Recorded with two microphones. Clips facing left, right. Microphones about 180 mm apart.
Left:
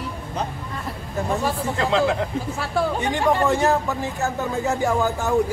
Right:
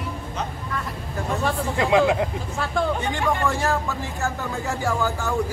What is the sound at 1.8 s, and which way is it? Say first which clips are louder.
Speech: right 2 dB; 15° right (ahead or behind).